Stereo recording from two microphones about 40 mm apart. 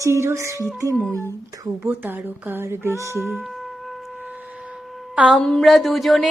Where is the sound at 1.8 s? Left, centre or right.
Right.